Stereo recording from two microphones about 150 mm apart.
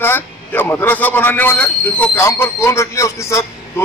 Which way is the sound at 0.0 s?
15° left (ahead or behind).